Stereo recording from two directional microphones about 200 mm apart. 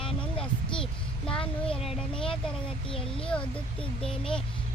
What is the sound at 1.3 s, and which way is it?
Speech, 25° left (ahead or behind).